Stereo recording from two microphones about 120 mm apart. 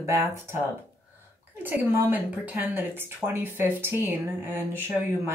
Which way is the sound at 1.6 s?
15° right (ahead or behind).